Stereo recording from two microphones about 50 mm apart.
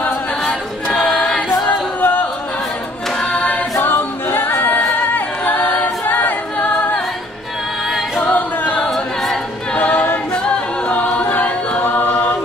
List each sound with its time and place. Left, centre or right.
0.8 s choir: left
1.7 s music: left
3.2 s singing: left
3.8 s a capella: left
5.4 s a capella: left
8.2 s singing: left
8.9 s a capella: centre
9.8 s a capella: left
10.3 s a capella: left